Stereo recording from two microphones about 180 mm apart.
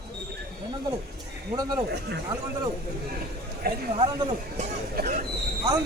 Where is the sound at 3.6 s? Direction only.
60° right (ahead or behind).